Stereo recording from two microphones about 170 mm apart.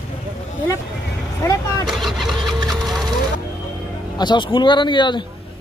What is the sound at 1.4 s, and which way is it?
Speech, 20° left (ahead or behind).